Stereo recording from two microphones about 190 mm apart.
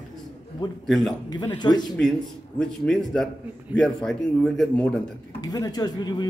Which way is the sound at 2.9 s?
5° left (ahead or behind).